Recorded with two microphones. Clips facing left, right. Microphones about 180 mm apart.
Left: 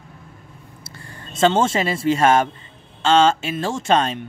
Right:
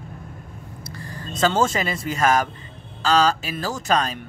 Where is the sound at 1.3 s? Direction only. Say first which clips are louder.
Left 3 dB; 25° left (ahead or behind).